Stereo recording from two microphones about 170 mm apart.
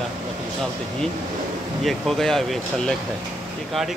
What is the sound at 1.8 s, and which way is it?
Speech, centre (ahead or behind).